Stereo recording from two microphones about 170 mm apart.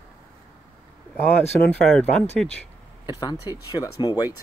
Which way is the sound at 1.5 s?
5° left (ahead or behind).